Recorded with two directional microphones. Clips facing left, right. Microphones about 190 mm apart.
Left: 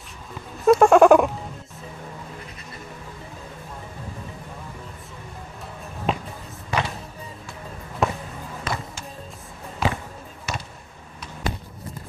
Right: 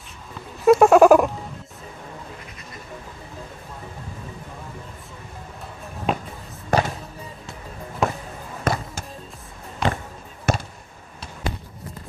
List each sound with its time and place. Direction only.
0.7 s a sound: 5° right (ahead or behind)
6.1 s music: centre (ahead or behind)
6.7 s music: 45° right (ahead or behind)
8.0 s music: centre (ahead or behind)
8.7 s music: 50° right (ahead or behind)
9.8 s basketball bounce: 5° left (ahead or behind)
10.5 s basketball bounce: 50° right (ahead or behind)